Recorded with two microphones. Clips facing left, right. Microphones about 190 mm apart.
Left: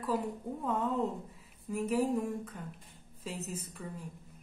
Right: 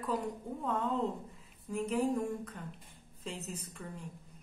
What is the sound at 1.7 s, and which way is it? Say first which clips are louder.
A woman's voice: left 1 dB; 5° left (ahead or behind).